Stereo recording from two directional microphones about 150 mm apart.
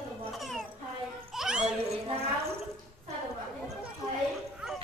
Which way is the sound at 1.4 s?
5° right (ahead or behind).